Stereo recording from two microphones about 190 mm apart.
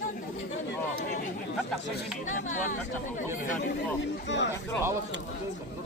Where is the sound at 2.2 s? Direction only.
40° left (ahead or behind).